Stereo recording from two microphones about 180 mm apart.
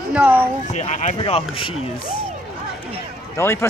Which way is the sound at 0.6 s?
40° left (ahead or behind).